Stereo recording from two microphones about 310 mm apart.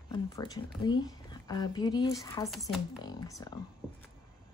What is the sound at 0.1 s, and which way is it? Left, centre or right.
Speech, centre.